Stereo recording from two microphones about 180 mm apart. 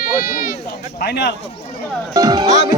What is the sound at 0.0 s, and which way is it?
Speech, 50° left (ahead or behind).